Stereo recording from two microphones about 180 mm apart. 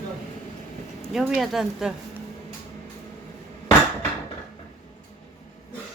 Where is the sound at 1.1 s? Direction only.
Centre (ahead or behind).